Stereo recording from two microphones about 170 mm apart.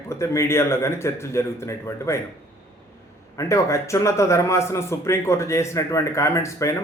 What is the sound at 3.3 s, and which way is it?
A man's voice, 20° left (ahead or behind).